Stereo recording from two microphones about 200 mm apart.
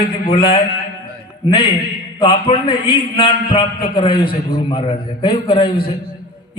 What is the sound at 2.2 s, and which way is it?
A man's voice, 25° left (ahead or behind).